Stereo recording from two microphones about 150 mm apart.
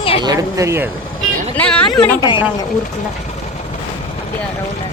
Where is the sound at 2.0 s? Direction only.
30° left (ahead or behind).